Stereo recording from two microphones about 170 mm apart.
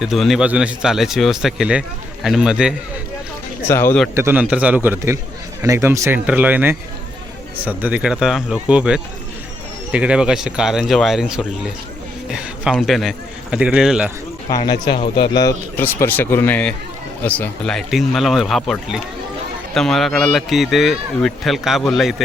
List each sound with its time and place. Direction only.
0.0 s a man's voice: centre (ahead or behind)
3.7 s speech: 15° left (ahead or behind)
4.1 s a man's voice: 15° right (ahead or behind)
14.5 s speech: 25° left (ahead or behind)
15.8 s a man's voice: 10° left (ahead or behind)